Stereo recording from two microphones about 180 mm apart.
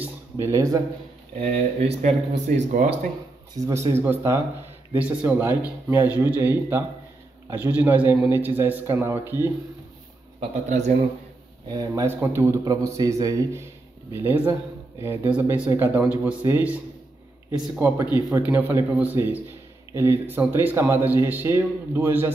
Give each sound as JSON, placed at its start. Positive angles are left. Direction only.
{"t": 0.0, "sound": "a sound", "side_deg": -15}
{"t": 1.4, "sound": "speech", "side_deg": -35}
{"t": 3.5, "sound": "speech", "side_deg": -20}
{"t": 10.7, "sound": "speech", "side_deg": -40}
{"t": 11.7, "sound": "speech", "side_deg": -20}